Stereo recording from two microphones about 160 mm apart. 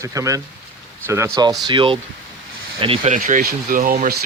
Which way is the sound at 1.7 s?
30° right (ahead or behind).